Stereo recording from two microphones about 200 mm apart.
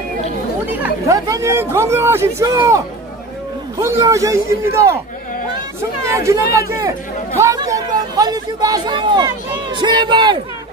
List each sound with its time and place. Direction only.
0.7 s speech: 10° right (ahead or behind)
3.8 s speech: 15° right (ahead or behind)